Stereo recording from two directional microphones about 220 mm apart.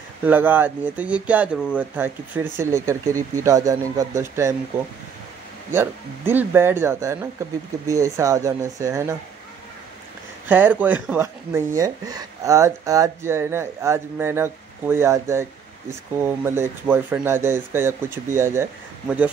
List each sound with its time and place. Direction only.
0.2 s speech: 10° right (ahead or behind)
5.7 s speech: 10° right (ahead or behind)
10.5 s speech: 5° right (ahead or behind)